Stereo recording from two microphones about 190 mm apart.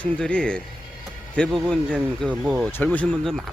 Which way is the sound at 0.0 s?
5° left (ahead or behind).